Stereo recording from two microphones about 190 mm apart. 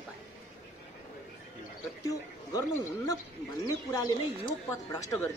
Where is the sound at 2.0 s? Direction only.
20° left (ahead or behind).